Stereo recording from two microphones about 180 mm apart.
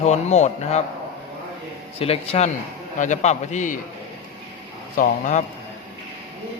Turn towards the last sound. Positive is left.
turn(degrees=45)  # may be behind; listen again after turning